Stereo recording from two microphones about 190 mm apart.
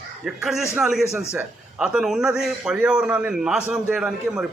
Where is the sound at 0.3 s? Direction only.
Centre (ahead or behind).